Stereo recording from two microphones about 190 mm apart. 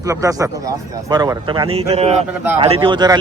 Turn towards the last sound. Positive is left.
turn(degrees=-20)  # may be behind; listen again after turning